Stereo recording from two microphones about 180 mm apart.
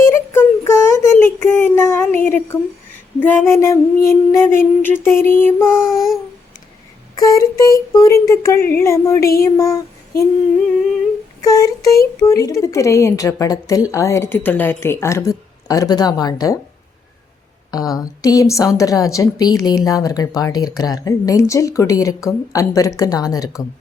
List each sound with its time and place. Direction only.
0.1 s child singing: 15° left (ahead or behind)
3.2 s a woman's voice: 10° left (ahead or behind)
5.6 s child singing: 5° right (ahead or behind)
7.2 s a woman's voice: 20° left (ahead or behind)
9.4 s child singing: 20° left (ahead or behind)
11.4 s a woman's voice: 20° left (ahead or behind)
17.7 s a woman's voice: 20° left (ahead or behind)